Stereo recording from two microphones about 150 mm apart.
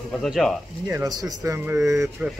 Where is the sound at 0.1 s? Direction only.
Centre (ahead or behind).